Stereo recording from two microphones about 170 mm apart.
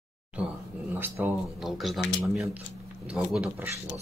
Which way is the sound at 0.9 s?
10° right (ahead or behind).